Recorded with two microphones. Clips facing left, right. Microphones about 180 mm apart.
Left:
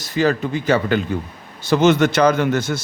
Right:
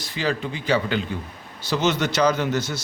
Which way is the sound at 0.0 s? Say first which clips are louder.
Left 7 dB; 45° left (ahead or behind).